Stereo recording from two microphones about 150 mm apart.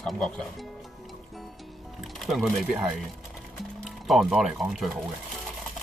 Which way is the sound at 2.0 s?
Centre (ahead or behind).